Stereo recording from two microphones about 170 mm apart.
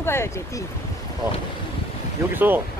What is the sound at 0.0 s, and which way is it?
Speech, 15° left (ahead or behind).